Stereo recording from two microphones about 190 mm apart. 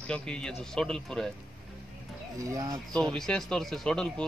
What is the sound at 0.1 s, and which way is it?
Speech, 5° left (ahead or behind).